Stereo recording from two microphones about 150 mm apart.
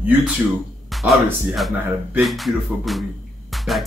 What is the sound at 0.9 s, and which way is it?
Music, centre (ahead or behind).